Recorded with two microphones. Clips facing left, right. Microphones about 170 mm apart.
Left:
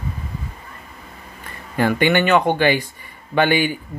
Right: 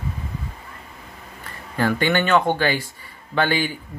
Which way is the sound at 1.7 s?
15° left (ahead or behind).